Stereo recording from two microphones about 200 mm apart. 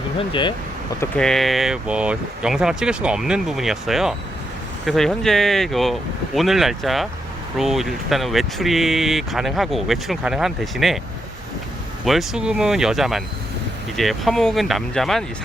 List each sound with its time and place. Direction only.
0.2 s speech: 25° left (ahead or behind)
1.1 s speech: centre (ahead or behind)
12.0 s speech: centre (ahead or behind)